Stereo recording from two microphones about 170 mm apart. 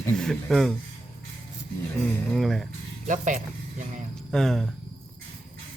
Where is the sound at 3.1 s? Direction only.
45° right (ahead or behind).